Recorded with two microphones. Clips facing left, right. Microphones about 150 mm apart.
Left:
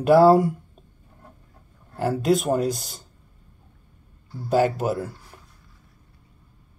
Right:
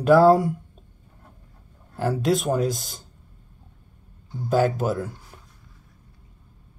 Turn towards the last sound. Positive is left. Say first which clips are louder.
# even
turn(degrees=0)  # may be behind; listen again after turning